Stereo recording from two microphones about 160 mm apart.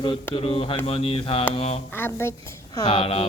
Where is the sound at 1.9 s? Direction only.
15° left (ahead or behind).